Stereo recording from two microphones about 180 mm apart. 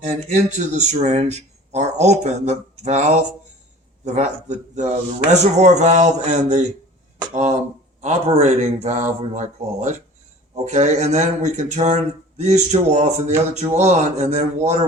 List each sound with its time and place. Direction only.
0.0 s speech: 40° right (ahead or behind)
8.0 s speech: 40° right (ahead or behind)